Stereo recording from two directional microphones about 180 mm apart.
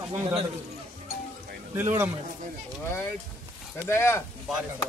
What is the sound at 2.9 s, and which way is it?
Speech, 15° left (ahead or behind).